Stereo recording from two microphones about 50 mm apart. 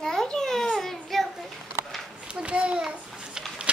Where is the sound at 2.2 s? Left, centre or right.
Right.